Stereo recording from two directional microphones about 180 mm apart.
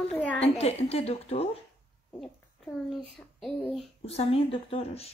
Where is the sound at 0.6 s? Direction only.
35° left (ahead or behind).